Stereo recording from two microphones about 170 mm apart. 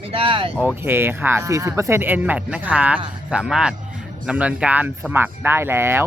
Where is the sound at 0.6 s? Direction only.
10° right (ahead or behind).